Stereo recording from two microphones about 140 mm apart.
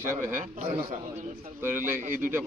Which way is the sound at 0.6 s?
45° right (ahead or behind).